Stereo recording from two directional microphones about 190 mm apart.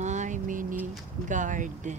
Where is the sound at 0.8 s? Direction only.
40° right (ahead or behind).